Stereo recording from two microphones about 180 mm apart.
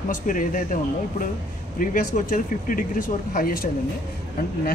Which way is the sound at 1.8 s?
50° left (ahead or behind).